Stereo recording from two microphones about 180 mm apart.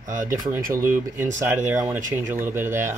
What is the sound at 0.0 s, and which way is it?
Speech, 45° right (ahead or behind).